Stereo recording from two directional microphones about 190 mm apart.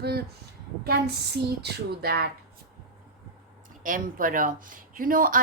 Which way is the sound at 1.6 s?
55° right (ahead or behind).